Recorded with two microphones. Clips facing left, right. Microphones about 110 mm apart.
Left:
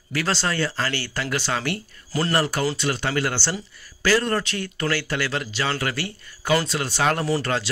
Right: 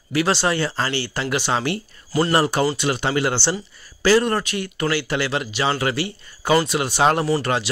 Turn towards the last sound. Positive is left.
turn(degrees=-15)  # may be behind; listen again after turning